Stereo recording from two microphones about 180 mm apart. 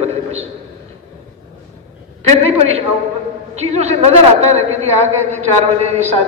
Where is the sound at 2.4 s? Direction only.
35° right (ahead or behind).